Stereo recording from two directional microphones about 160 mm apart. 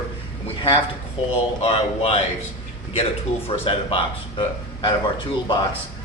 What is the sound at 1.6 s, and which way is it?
Speech, 35° left (ahead or behind).